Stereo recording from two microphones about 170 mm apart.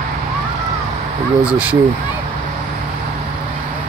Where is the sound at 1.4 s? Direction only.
5° right (ahead or behind).